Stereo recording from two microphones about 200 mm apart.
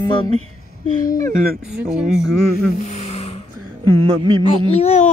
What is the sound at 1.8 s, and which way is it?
Speech, 5° right (ahead or behind).